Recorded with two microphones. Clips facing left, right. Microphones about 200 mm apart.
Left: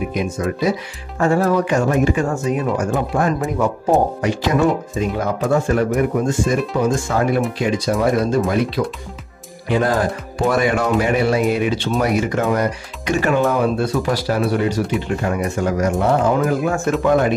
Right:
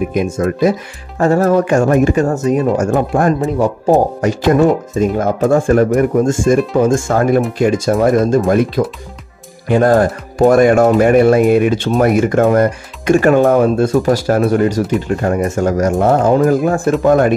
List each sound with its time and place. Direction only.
0.1 s speech: 50° right (ahead or behind)
3.5 s speech: 30° right (ahead or behind)
4.2 s speech: 50° right (ahead or behind)